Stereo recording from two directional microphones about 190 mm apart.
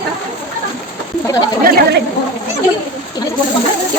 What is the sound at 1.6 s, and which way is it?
Speech, 50° right (ahead or behind).